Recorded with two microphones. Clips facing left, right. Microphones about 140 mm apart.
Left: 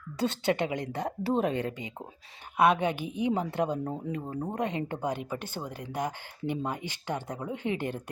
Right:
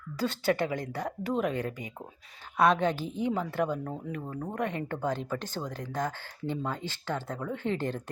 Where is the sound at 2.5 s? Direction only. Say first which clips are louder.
Even; 10° left (ahead or behind).